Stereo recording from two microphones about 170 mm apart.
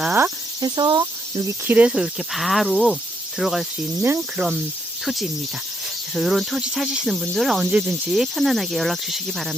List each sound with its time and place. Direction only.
0.6 s speech: 25° right (ahead or behind)
1.5 s speech: 10° right (ahead or behind)
4.0 s speech: 15° right (ahead or behind)
5.0 s speech: centre (ahead or behind)